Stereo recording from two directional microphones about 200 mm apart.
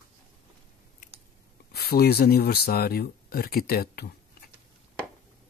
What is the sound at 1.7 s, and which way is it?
Speech, 50° left (ahead or behind).